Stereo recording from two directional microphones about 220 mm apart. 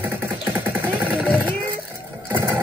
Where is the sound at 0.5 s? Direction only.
10° right (ahead or behind).